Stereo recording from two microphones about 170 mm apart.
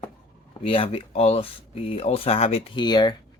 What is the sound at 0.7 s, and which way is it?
Speech, 35° left (ahead or behind).